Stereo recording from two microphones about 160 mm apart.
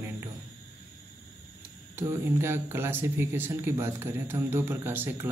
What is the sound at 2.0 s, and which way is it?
Speech, 15° right (ahead or behind).